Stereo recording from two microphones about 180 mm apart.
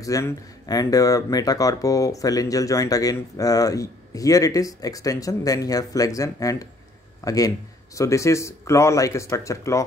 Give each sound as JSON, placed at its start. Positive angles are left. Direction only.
{"t": 0.0, "sound": "a man's voice", "side_deg": 20}